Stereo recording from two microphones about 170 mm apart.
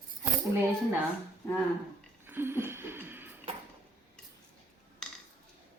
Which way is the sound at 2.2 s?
15° right (ahead or behind).